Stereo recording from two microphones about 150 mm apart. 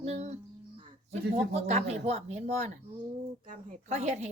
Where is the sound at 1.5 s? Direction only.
50° right (ahead or behind).